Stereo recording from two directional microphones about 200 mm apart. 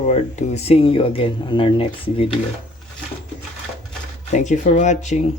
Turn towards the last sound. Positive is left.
turn(degrees=35)  # may be behind; listen again after turning